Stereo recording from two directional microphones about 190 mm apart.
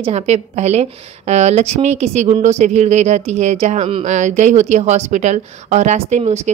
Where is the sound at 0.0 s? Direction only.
35° right (ahead or behind).